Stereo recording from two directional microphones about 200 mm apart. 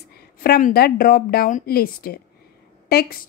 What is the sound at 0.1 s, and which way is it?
Speech, 50° left (ahead or behind).